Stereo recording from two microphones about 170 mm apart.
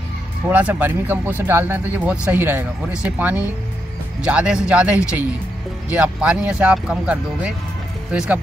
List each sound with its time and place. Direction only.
0.5 s speech: 10° right (ahead or behind)